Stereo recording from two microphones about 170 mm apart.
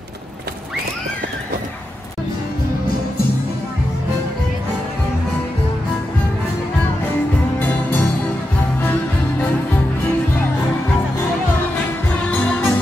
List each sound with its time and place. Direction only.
12.3 s music: 10° left (ahead or behind)